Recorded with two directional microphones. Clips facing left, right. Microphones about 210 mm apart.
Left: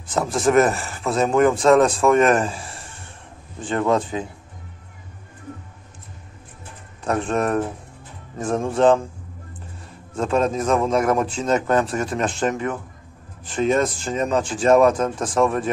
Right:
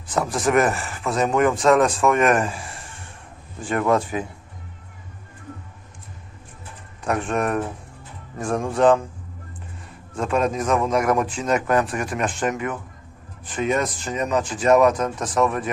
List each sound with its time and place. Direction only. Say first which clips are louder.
0.1 s speech: left 2 dB; 25° left (ahead or behind)
7.1 s speech: left 2 dB; 35° left (ahead or behind)
10.1 s speech: left 2 dB; 25° left (ahead or behind)